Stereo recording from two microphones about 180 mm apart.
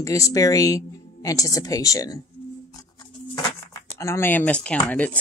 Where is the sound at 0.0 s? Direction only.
20° left (ahead or behind).